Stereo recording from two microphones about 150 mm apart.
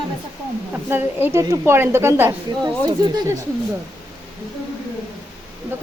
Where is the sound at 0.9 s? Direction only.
15° right (ahead or behind).